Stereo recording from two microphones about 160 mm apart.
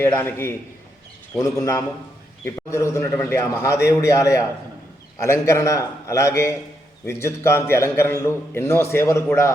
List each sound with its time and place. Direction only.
0.0 s a man's voice: 15° left (ahead or behind)